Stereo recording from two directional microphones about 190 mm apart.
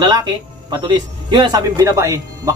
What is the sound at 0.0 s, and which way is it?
Speech, 25° right (ahead or behind).